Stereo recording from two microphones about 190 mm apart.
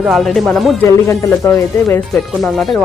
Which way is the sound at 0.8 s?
15° left (ahead or behind).